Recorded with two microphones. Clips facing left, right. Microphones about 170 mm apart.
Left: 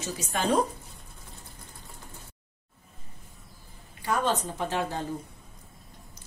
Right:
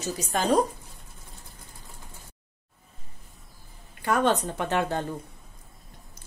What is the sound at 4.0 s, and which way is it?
A woman's voice, 60° right (ahead or behind).